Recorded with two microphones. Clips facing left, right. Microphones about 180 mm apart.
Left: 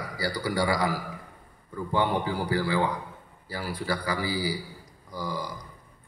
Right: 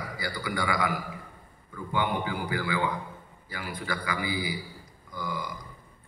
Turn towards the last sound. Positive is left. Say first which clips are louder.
# left 2 dB
turn(degrees=35)  # may be behind; listen again after turning